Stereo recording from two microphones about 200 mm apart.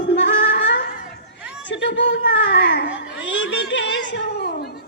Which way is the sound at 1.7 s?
65° left (ahead or behind).